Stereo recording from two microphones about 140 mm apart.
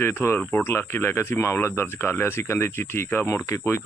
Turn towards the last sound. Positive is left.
turn(degrees=20)  # may be behind; listen again after turning